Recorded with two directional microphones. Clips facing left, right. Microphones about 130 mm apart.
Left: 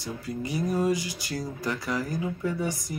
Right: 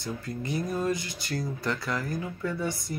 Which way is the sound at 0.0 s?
10° left (ahead or behind).